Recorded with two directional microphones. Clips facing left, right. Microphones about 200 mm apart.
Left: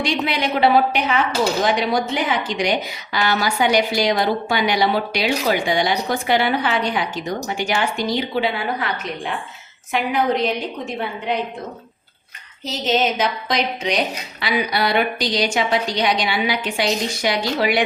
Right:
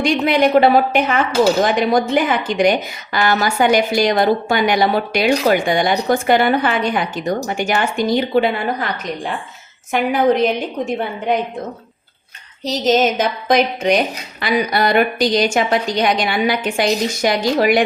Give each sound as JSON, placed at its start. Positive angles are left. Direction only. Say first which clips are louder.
{"t": 0.0, "sound": "a woman's voice", "louder": "right 7 dB", "side_deg": -50}
{"t": 12.6, "sound": "a woman's voice", "louder": "right 5 dB", "side_deg": -40}